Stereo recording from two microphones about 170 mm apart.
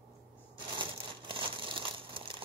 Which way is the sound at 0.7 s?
30° right (ahead or behind).